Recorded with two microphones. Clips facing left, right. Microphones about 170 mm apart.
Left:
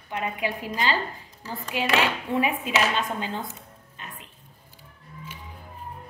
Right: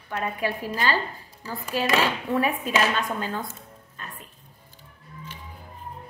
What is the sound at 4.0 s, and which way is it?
Music, 20° left (ahead or behind).